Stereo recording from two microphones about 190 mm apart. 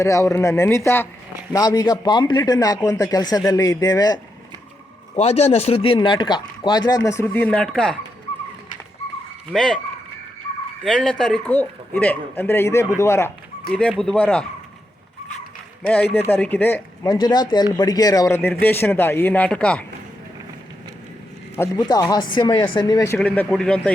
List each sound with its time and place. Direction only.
0.0 s speech: 15° left (ahead or behind)
5.1 s speech: 35° left (ahead or behind); by 7.9 s 5° left (ahead or behind)
9.5 s speech: 5° left (ahead or behind)
10.8 s speech: 5° left (ahead or behind)
16.3 s speech: 10° left (ahead or behind)
21.5 s speech: 15° left (ahead or behind)